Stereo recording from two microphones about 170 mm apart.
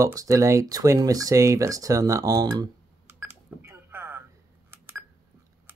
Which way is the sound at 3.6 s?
15° right (ahead or behind).